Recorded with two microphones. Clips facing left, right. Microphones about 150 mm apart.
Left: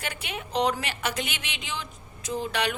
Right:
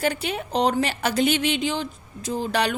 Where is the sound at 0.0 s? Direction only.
35° right (ahead or behind).